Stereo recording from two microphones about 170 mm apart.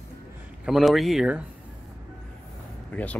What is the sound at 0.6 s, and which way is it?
Speech, centre (ahead or behind).